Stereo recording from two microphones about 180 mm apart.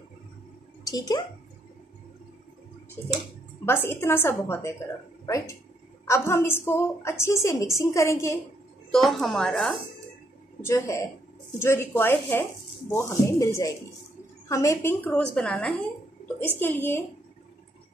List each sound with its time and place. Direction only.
0.8 s speech: 20° left (ahead or behind)
3.6 s a woman's voice: 10° left (ahead or behind)
8.9 s speech: centre (ahead or behind)
10.6 s a woman's voice: 15° left (ahead or behind)